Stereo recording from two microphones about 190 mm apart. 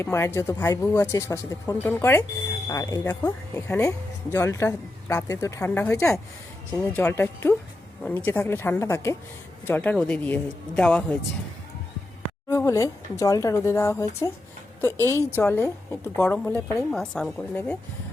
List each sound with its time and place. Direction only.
0.0 s speech: 15° left (ahead or behind)
12.5 s speech: 15° left (ahead or behind)
15.4 s speech: 10° left (ahead or behind)